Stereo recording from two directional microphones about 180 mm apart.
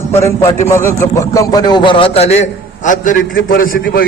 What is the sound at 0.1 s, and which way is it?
A man's voice, 15° left (ahead or behind).